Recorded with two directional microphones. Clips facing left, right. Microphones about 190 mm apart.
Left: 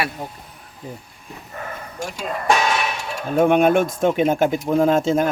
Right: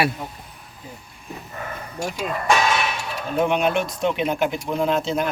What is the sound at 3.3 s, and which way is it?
Speech, 50° left (ahead or behind).